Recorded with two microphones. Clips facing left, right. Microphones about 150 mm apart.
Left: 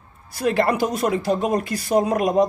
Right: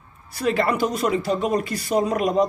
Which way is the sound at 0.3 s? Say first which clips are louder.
Left 2 dB; 45° left (ahead or behind).